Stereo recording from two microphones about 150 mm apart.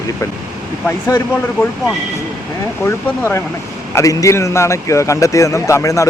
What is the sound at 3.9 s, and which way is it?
A man's voice, 20° left (ahead or behind).